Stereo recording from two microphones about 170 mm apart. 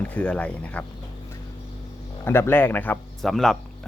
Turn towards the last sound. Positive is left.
turn(degrees=0)  # may be behind; listen again after turning